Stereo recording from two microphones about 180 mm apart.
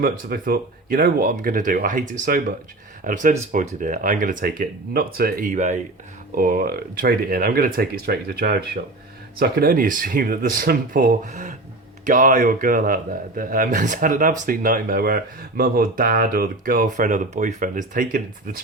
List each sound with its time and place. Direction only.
0.0 s speech: 55° right (ahead or behind)